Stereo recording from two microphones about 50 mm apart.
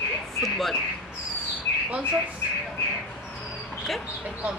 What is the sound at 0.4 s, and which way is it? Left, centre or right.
Speech, centre.